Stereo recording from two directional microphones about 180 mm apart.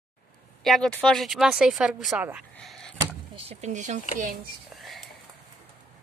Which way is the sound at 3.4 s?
40° right (ahead or behind).